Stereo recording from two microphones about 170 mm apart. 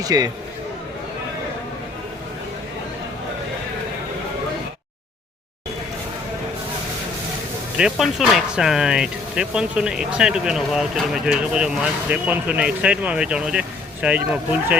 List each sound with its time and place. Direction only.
0.0 s a man's voice: 20° right (ahead or behind)
7.8 s speech: 5° right (ahead or behind)